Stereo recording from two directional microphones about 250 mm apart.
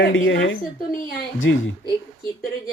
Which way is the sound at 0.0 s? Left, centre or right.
Left.